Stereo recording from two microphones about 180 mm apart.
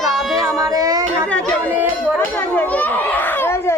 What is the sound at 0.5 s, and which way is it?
Child singing, 20° right (ahead or behind).